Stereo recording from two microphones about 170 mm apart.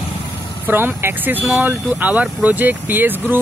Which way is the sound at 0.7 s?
10° right (ahead or behind).